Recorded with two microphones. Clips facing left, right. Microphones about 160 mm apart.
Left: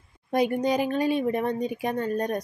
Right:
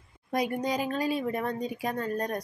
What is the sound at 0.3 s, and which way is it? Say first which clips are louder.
A woman's voice: left 5 dB; 25° left (ahead or behind).